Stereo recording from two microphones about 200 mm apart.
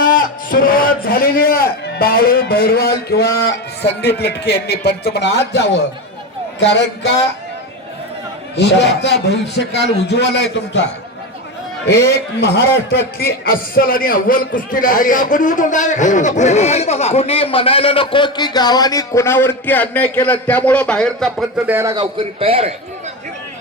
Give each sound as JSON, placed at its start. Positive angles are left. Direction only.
{"t": 0.0, "sound": "a man's voice", "side_deg": 45}
{"t": 8.5, "sound": "a man's voice", "side_deg": 60}
{"t": 11.9, "sound": "a man's voice", "side_deg": 55}
{"t": 22.2, "sound": "a man's voice", "side_deg": -30}